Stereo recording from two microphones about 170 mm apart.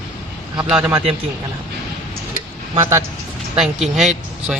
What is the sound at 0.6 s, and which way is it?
Speech, 5° right (ahead or behind).